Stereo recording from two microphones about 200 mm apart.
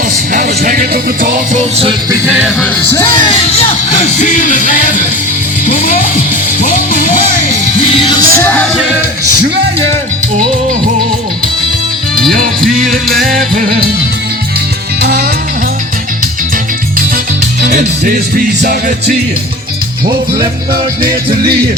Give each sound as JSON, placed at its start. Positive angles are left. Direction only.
{"t": 0.3, "sound": "music", "side_deg": -45}
{"t": 2.2, "sound": "music", "side_deg": -10}
{"t": 3.1, "sound": "speech", "side_deg": 25}
{"t": 3.8, "sound": "music", "side_deg": 40}
{"t": 6.6, "sound": "music", "side_deg": 40}
{"t": 8.1, "sound": "music", "side_deg": 15}
{"t": 8.7, "sound": "music", "side_deg": 0}
{"t": 13.2, "sound": "music", "side_deg": -45}
{"t": 15.0, "sound": "music", "side_deg": -50}
{"t": 17.6, "sound": "music", "side_deg": -45}